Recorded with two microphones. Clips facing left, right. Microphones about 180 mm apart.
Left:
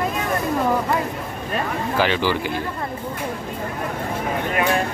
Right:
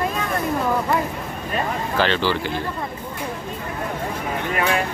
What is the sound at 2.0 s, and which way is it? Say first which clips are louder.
Speech: even; 10° left (ahead or behind).